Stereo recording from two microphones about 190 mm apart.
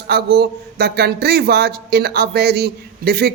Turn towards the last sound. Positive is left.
turn(degrees=-55)  # may be behind; listen again after turning